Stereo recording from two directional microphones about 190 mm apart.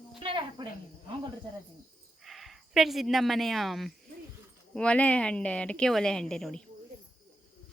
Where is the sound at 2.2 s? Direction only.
Centre (ahead or behind).